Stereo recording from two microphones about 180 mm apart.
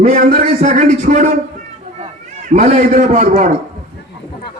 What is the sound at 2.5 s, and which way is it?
A man's voice, 40° right (ahead or behind).